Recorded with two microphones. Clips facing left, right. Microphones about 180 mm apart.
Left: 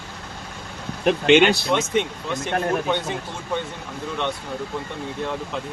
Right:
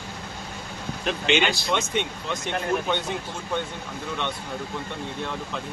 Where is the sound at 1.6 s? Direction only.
5° left (ahead or behind).